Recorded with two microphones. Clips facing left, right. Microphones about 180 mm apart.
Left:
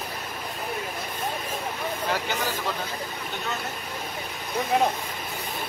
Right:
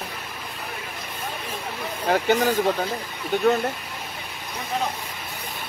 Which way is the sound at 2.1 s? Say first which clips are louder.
Right 11 dB; 55° right (ahead or behind).